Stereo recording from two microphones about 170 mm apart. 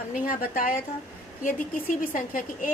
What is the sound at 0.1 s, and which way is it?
A woman's voice, 55° left (ahead or behind).